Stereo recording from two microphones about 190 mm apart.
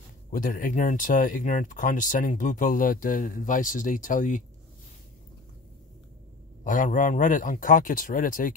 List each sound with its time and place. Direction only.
0.3 s speech: 45° left (ahead or behind)
6.6 s speech: 45° left (ahead or behind)